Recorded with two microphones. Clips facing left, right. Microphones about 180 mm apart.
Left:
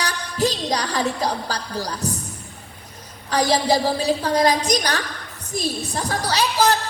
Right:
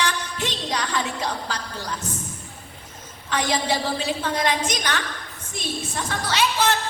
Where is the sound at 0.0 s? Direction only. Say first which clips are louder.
Left 4 dB; 35° left (ahead or behind).